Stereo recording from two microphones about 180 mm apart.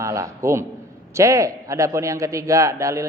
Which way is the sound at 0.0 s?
15° right (ahead or behind).